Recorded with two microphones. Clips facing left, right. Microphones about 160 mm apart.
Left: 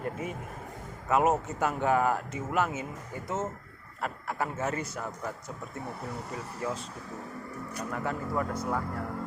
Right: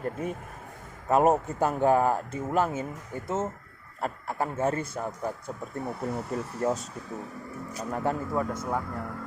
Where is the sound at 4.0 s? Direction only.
30° right (ahead or behind).